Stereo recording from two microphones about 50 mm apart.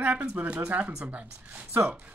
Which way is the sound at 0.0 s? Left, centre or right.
Right.